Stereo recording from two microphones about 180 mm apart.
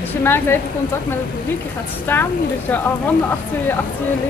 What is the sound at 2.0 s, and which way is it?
Speech, 10° left (ahead or behind).